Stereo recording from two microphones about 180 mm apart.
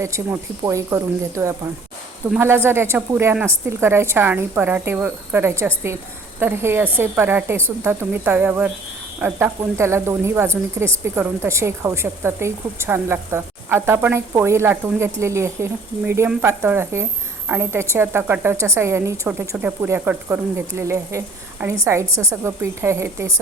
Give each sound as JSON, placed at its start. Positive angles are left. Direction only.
{"t": 0.0, "sound": "speech", "side_deg": -15}